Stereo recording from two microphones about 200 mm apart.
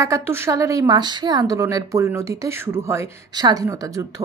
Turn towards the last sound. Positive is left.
turn(degrees=-15)  # may be behind; listen again after turning